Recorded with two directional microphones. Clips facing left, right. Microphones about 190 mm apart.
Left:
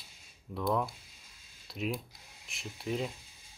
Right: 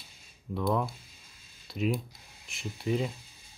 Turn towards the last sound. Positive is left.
turn(degrees=0)  # may be behind; listen again after turning